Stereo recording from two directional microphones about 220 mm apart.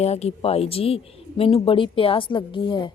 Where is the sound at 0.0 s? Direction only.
30° left (ahead or behind).